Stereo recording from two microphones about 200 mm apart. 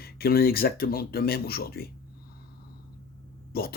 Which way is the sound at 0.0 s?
50° left (ahead or behind).